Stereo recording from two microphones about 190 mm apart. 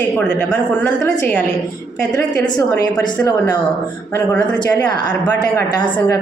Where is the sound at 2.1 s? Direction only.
20° left (ahead or behind).